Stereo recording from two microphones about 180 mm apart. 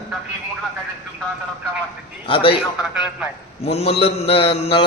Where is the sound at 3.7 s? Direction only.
35° left (ahead or behind).